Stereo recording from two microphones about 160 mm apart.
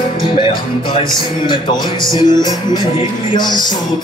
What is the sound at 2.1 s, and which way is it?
Music, 25° left (ahead or behind).